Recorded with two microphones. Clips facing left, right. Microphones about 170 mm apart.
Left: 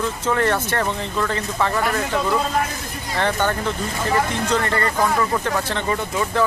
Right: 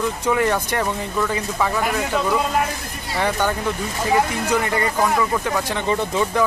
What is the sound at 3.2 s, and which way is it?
Speech, 10° right (ahead or behind).